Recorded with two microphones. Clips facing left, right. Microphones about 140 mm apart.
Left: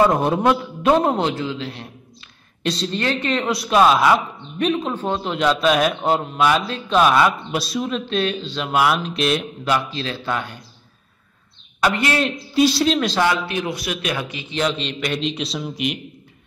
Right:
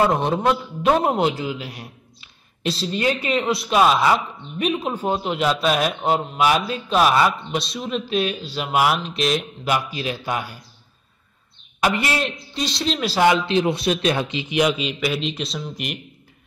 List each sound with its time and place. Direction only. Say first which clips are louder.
0.1 s a man's voice: left 2 dB; centre (ahead or behind)
9.7 s a man's voice: left 1 dB; 10° right (ahead or behind)
11.8 s speech: left 2 dB; 5° right (ahead or behind)
13.3 s speech: right 4 dB; 25° right (ahead or behind)
14.5 s speech: right 2 dB; 10° right (ahead or behind)